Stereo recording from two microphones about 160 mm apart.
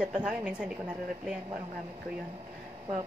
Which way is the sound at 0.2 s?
5° right (ahead or behind).